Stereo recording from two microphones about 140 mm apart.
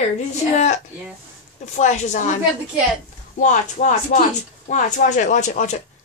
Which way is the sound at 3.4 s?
60° left (ahead or behind).